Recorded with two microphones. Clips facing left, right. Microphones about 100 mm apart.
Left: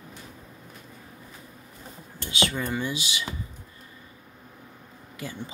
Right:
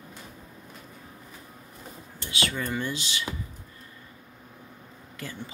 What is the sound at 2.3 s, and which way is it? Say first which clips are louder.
Speech: left 2 dB; 20° left (ahead or behind).